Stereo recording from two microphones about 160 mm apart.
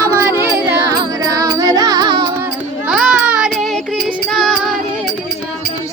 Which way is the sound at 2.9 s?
5° right (ahead or behind).